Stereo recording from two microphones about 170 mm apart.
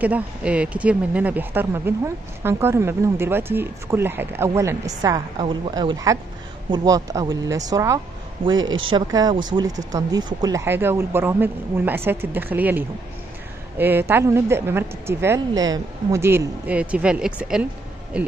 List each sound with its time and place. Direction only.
0.0 s speech: 10° right (ahead or behind)